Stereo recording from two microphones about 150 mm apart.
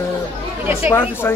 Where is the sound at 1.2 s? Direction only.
15° left (ahead or behind).